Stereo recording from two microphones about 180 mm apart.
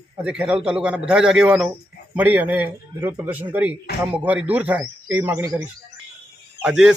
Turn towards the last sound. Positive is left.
turn(degrees=-5)  # may be behind; listen again after turning